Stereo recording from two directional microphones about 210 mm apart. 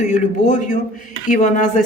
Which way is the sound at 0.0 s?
35° left (ahead or behind).